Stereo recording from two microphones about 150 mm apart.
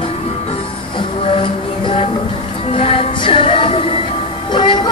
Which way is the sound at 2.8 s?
40° left (ahead or behind).